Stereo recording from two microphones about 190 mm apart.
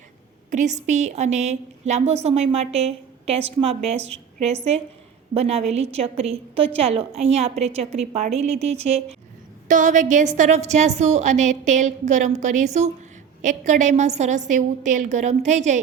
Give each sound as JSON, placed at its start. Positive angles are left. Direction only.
{"t": 0.5, "sound": "a woman's voice", "side_deg": -40}